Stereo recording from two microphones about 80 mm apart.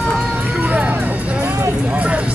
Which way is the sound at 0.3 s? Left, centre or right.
Centre.